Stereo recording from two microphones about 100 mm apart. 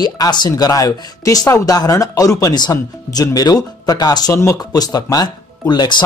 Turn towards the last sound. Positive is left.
turn(degrees=50)  # may be behind; listen again after turning